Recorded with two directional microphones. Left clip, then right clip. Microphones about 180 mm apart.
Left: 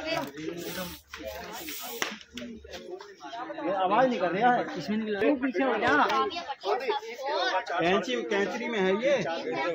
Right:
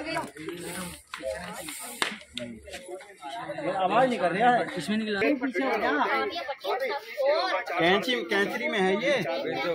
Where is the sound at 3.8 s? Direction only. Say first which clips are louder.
Right 1 dB; 55° right (ahead or behind).